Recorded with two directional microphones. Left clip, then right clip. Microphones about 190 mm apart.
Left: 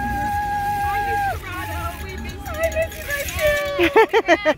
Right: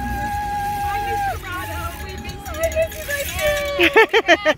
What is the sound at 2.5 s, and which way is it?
Music, 10° right (ahead or behind).